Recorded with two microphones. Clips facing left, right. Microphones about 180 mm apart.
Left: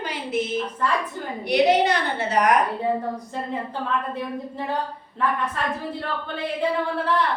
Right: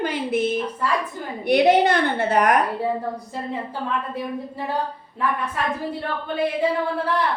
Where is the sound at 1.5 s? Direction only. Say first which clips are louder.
Right 2 dB; 55° right (ahead or behind).